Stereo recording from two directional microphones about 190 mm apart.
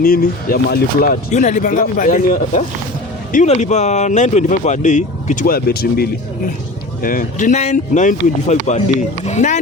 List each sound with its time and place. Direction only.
0.0 s speech: 50° left (ahead or behind)